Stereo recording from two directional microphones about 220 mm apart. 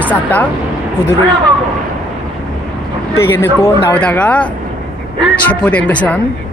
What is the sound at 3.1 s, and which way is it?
Speech, 10° left (ahead or behind).